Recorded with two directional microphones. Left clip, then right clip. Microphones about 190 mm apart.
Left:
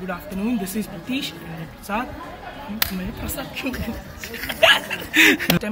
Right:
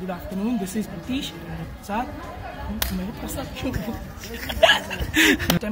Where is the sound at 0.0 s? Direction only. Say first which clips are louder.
Left 1 dB; centre (ahead or behind).